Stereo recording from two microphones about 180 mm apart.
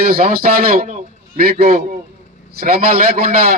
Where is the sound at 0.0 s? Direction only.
55° right (ahead or behind).